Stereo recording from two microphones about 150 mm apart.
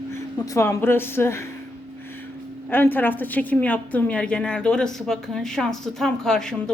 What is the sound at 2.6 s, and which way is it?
A woman's voice, 15° left (ahead or behind).